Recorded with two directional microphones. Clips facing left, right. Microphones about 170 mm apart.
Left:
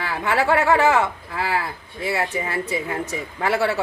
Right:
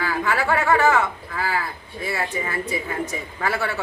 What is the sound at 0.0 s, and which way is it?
Speech, 25° left (ahead or behind).